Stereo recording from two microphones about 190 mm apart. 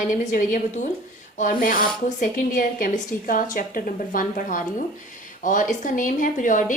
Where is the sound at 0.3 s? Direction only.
40° left (ahead or behind).